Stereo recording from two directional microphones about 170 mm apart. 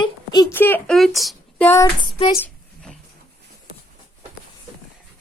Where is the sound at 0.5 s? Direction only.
10° left (ahead or behind).